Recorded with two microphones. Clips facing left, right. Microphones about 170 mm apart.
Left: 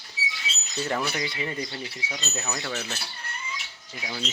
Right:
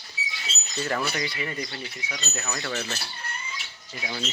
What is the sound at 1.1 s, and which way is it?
Speech, 20° left (ahead or behind).